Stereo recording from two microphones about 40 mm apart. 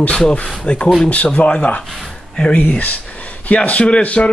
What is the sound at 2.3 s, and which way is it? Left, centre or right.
A man's voice, left.